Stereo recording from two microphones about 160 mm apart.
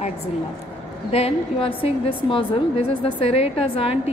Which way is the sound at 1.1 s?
35° left (ahead or behind).